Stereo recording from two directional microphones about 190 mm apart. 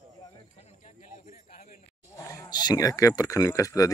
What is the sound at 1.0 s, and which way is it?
Speech, 40° left (ahead or behind).